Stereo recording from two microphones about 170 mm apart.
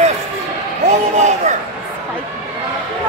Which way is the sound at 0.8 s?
45° right (ahead or behind).